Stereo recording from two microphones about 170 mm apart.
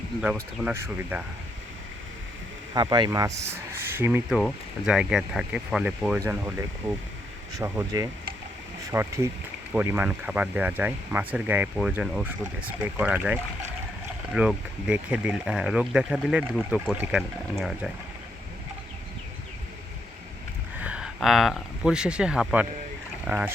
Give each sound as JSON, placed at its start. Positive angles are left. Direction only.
{"t": 0.6, "sound": "speech", "side_deg": -10}
{"t": 2.7, "sound": "speech", "side_deg": -25}
{"t": 4.4, "sound": "speech", "side_deg": 0}
{"t": 6.1, "sound": "speech", "side_deg": -15}
{"t": 20.7, "sound": "speech", "side_deg": -5}